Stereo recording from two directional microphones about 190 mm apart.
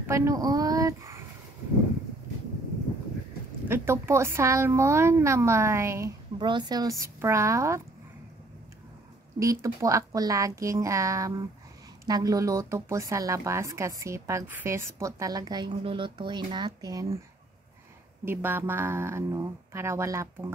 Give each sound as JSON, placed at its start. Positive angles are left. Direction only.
{"t": 0.0, "sound": "a woman's voice", "side_deg": -15}
{"t": 3.6, "sound": "a woman's voice", "side_deg": -10}
{"t": 9.4, "sound": "a woman's voice", "side_deg": -15}
{"t": 18.2, "sound": "a woman's voice", "side_deg": -10}